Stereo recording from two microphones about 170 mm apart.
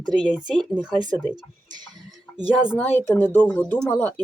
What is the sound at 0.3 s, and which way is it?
Speech, 5° right (ahead or behind).